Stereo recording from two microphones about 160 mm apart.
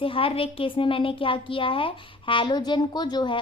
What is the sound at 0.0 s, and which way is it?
Speech, 35° left (ahead or behind).